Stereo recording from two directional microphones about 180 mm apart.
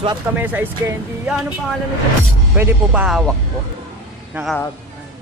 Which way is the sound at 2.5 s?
10° right (ahead or behind).